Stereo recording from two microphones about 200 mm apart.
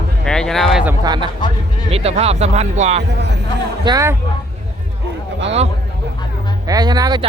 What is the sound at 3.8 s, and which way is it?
Speech, 15° right (ahead or behind).